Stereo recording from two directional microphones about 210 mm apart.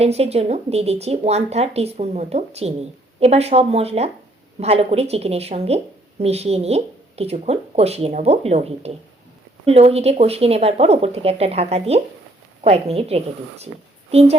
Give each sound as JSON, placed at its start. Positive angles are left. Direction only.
{"t": 0.0, "sound": "a woman's voice", "side_deg": -30}